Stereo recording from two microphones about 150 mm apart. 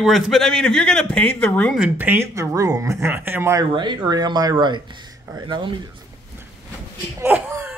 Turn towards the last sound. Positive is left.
turn(degrees=-15)  # may be behind; listen again after turning